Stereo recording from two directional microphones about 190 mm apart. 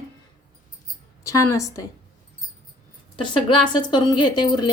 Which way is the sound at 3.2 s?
25° left (ahead or behind).